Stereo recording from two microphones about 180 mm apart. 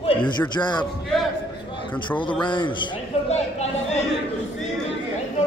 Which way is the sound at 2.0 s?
25° left (ahead or behind).